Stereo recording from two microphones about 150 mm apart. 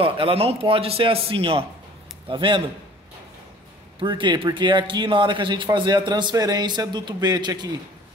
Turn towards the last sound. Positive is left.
turn(degrees=-30)  # may be behind; listen again after turning